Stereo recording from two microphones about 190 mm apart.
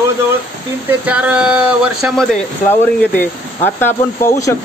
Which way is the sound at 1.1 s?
5° right (ahead or behind).